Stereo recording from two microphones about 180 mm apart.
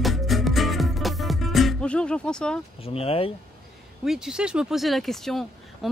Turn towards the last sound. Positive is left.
turn(degrees=0)  # may be behind; listen again after turning